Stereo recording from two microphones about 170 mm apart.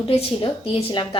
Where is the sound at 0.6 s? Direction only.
30° left (ahead or behind).